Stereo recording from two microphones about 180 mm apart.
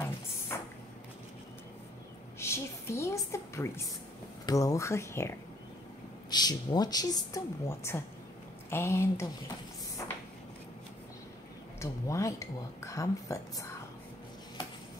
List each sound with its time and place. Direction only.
0.5 s a sound: 15° left (ahead or behind)
2.3 s music: 15° left (ahead or behind)
4.5 s speech: 20° left (ahead or behind)
6.3 s speech: 20° left (ahead or behind)
11.8 s speech: 15° left (ahead or behind)